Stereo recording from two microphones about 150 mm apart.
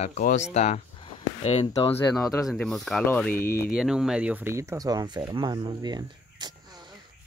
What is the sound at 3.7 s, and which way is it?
Speech, 5° right (ahead or behind).